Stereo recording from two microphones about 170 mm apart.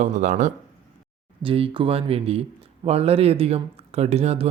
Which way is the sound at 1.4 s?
35° right (ahead or behind).